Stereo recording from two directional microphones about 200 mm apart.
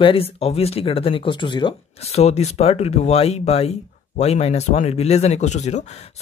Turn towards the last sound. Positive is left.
turn(degrees=35)  # may be behind; listen again after turning